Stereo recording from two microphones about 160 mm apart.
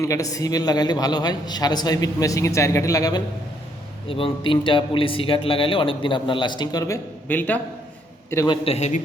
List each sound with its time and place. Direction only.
0.0 s a man's voice: 20° left (ahead or behind)
4.1 s a man's voice: 35° left (ahead or behind); by 7.6 s 10° left (ahead or behind)
8.4 s a man's voice: 40° left (ahead or behind)